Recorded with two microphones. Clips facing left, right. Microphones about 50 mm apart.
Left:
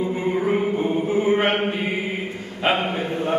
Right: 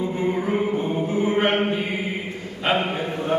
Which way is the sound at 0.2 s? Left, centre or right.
Centre.